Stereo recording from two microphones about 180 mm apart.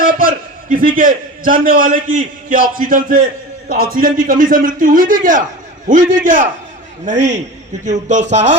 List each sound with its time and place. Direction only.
0.0 s a man's voice: 50° right (ahead or behind)